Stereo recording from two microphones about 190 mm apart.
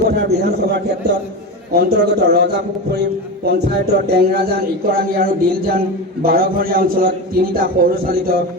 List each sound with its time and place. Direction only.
0.2 s a man's voice: 60° right (ahead or behind)